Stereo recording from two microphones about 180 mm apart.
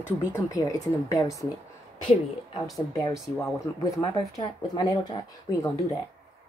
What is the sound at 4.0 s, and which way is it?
Speech, 15° left (ahead or behind).